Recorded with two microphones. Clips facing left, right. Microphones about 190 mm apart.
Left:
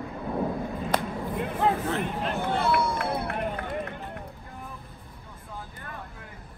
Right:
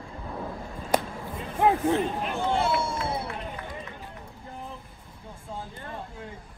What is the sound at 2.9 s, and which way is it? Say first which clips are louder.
Run: left 2 dB; 60° left (ahead or behind).